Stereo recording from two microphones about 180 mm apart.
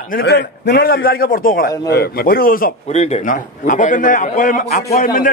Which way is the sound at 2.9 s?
35° left (ahead or behind).